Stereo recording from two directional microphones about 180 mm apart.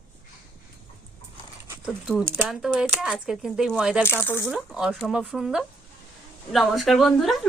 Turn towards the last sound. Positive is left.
turn(degrees=0)  # may be behind; listen again after turning